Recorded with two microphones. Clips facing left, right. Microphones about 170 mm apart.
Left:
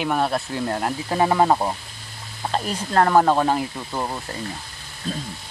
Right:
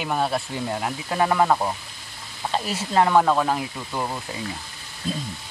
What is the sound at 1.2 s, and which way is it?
Speech, 20° left (ahead or behind).